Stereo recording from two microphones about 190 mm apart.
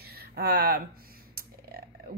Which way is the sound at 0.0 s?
55° right (ahead or behind).